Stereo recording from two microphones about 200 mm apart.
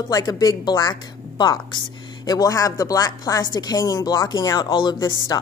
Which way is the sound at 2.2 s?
20° left (ahead or behind).